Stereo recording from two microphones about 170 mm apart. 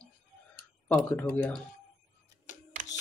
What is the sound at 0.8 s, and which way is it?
Speech, 10° left (ahead or behind).